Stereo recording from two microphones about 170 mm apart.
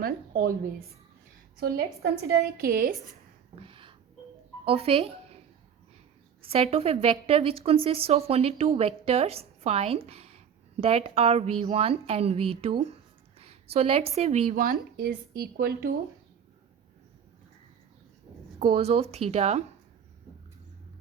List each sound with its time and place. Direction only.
0.0 s a woman's voice: 60° right (ahead or behind)
1.5 s a woman's voice: 65° right (ahead or behind)
3.5 s a sound: 30° right (ahead or behind)
4.6 s speech: 35° right (ahead or behind)
6.4 s a woman's voice: 35° right (ahead or behind)
14.6 s speech: 60° right (ahead or behind)
18.6 s a woman's voice: 35° right (ahead or behind)